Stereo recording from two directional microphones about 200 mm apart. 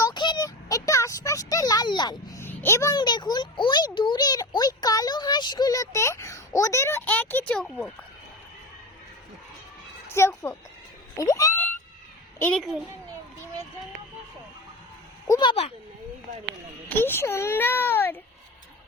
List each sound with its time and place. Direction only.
0.0 s a sound: 20° left (ahead or behind); by 7.9 s 5° left (ahead or behind)
10.1 s a child's voice: 15° left (ahead or behind)
11.2 s a sound: 15° left (ahead or behind)
12.4 s a child's voice: 5° left (ahead or behind)
15.3 s speech: 25° left (ahead or behind)
16.9 s a child's voice: 10° left (ahead or behind)